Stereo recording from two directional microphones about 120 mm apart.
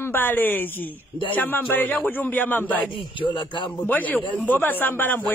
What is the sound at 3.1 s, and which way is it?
Speech, 45° left (ahead or behind).